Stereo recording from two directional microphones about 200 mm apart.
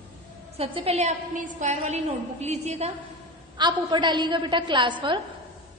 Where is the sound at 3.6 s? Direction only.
20° right (ahead or behind).